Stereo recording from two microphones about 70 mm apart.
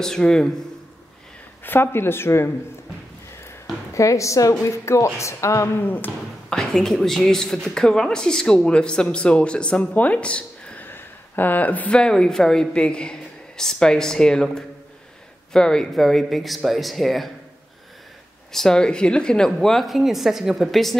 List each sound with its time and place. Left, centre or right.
0.0 s a woman's voice: centre
1.6 s speech: left
3.9 s a woman's voice: left
5.8 s speech: left
6.5 s a woman's voice: centre
10.9 s a sound: left
12.0 s a woman's voice: centre
18.5 s speech: centre